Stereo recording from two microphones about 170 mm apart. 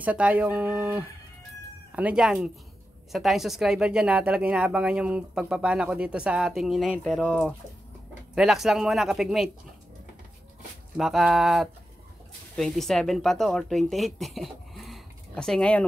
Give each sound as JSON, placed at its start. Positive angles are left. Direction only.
{"t": 0.0, "sound": "speech", "side_deg": -10}
{"t": 11.0, "sound": "speech", "side_deg": -5}